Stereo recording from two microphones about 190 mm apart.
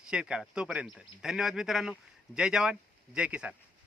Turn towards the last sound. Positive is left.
turn(degrees=-5)  # may be behind; listen again after turning